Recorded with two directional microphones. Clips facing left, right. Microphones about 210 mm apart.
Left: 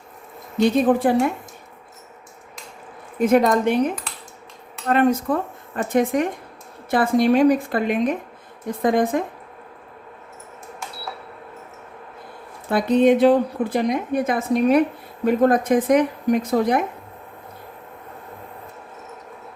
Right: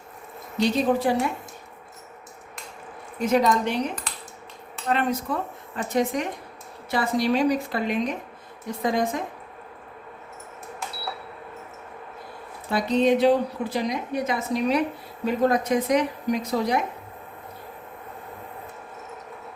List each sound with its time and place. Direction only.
0.5 s a woman's voice: 50° left (ahead or behind)
3.2 s a woman's voice: 55° left (ahead or behind)
12.7 s a woman's voice: 55° left (ahead or behind)